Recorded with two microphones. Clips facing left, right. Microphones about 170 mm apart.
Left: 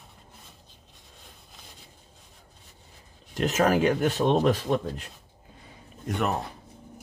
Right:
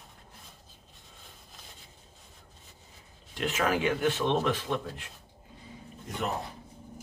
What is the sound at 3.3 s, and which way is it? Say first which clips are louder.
Speech: left 6 dB; 40° left (ahead or behind).